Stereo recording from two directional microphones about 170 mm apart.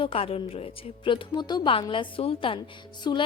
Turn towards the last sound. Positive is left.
turn(degrees=25)  # may be behind; listen again after turning